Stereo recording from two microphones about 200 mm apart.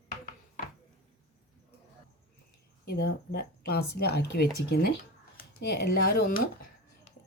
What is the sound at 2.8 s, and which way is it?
Speech, 55° left (ahead or behind).